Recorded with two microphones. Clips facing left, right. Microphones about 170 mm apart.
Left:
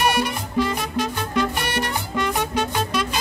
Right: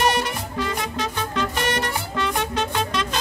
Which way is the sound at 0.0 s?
10° left (ahead or behind).